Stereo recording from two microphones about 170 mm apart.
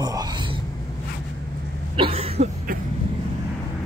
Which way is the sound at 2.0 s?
35° right (ahead or behind).